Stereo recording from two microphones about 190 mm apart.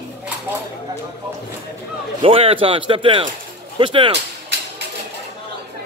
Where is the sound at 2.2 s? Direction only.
30° right (ahead or behind).